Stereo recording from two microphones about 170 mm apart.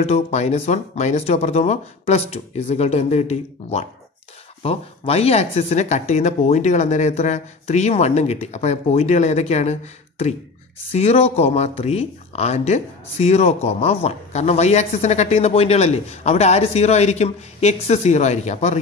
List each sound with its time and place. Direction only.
0.0 s speech: 40° left (ahead or behind)